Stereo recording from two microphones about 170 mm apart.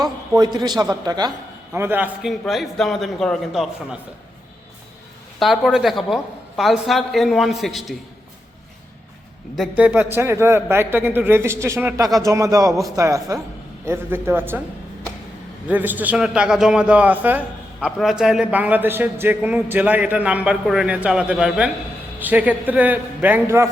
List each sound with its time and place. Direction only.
0.0 s a man's voice: 25° right (ahead or behind)
1.7 s a man's voice: 15° right (ahead or behind)
2.4 s a man's voice: centre (ahead or behind)
5.4 s a man's voice: centre (ahead or behind)
9.6 s a man's voice: 10° right (ahead or behind)
15.6 s a man's voice: 10° right (ahead or behind)